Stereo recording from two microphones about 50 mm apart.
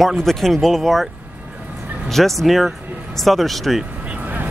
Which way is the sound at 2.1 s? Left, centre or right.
Centre.